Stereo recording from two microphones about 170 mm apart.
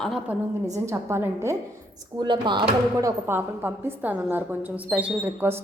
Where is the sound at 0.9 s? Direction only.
15° right (ahead or behind).